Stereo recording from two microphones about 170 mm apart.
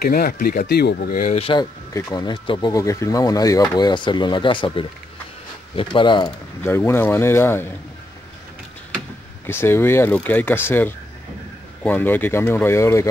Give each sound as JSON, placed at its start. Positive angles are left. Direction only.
{"t": 0.0, "sound": "speech", "side_deg": 65}
{"t": 1.2, "sound": "speech", "side_deg": 35}
{"t": 6.6, "sound": "speech", "side_deg": 15}
{"t": 9.5, "sound": "speech", "side_deg": 15}